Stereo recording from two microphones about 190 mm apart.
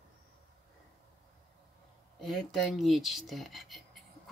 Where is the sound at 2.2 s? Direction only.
Centre (ahead or behind).